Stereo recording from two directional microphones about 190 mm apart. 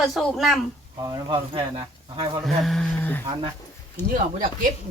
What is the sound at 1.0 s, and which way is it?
Speech, 25° right (ahead or behind).